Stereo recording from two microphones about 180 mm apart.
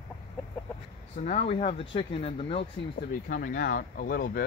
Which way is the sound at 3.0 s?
50° left (ahead or behind).